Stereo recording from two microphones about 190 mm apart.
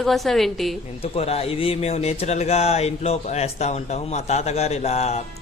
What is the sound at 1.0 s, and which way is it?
A man's voice, 30° left (ahead or behind).